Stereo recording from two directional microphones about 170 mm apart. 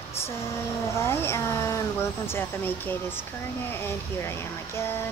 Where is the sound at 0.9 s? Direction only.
15° left (ahead or behind).